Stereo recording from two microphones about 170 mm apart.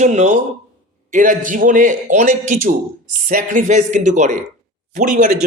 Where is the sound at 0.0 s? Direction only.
45° right (ahead or behind).